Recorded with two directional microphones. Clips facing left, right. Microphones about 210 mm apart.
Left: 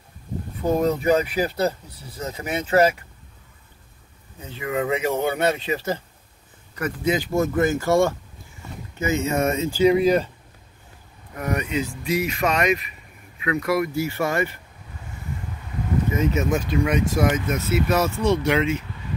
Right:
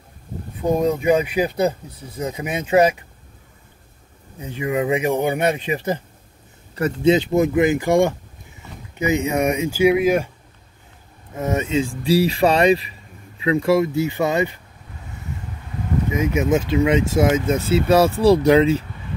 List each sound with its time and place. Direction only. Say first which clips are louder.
0.6 s speech: right 2 dB; 15° right (ahead or behind)
4.4 s speech: right 4 dB; 15° right (ahead or behind)
6.7 s speech: right 7 dB; 25° right (ahead or behind); by 10.3 s 10° right (ahead or behind)
11.3 s speech: right 4 dB; 25° right (ahead or behind)
16.1 s speech: right 4 dB; 15° right (ahead or behind); by 18.9 s 35° right (ahead or behind)